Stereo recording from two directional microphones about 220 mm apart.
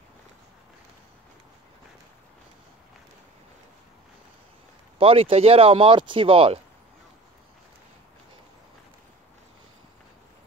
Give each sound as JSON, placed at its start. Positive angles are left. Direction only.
{"t": 4.9, "sound": "speech", "side_deg": -25}